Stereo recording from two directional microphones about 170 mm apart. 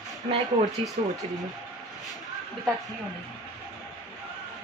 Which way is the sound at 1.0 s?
45° right (ahead or behind).